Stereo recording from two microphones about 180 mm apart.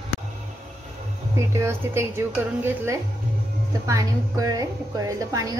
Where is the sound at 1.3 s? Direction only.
15° right (ahead or behind).